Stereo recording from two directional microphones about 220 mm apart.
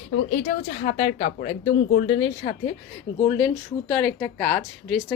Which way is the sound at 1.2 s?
45° left (ahead or behind).